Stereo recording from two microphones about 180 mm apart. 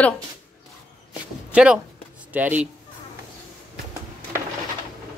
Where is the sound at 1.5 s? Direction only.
5° right (ahead or behind).